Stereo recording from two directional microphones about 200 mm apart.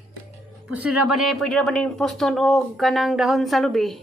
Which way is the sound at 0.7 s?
5° right (ahead or behind).